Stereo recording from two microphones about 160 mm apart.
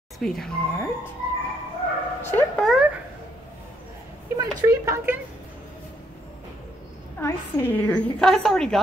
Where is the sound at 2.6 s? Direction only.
Centre (ahead or behind).